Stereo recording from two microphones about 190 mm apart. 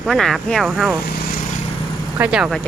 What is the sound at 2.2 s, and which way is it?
Speech, 5° right (ahead or behind).